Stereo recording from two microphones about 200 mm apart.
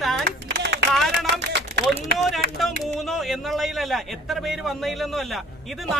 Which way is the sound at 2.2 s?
Centre (ahead or behind).